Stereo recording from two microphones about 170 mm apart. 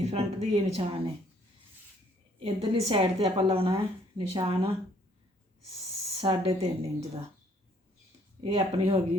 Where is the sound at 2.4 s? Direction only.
35° right (ahead or behind).